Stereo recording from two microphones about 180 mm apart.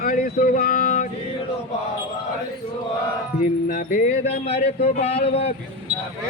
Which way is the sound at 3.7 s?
45° left (ahead or behind).